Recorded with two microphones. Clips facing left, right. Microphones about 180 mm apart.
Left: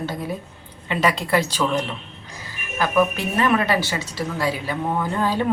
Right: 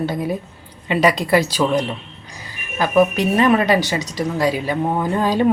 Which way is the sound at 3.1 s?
15° right (ahead or behind).